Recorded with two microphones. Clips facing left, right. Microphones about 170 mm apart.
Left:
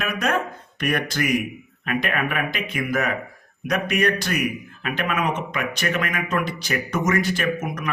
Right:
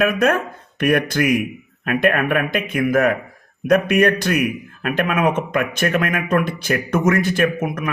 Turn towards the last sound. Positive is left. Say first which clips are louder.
# right 5 dB
turn(degrees=-55)  # may be behind; listen again after turning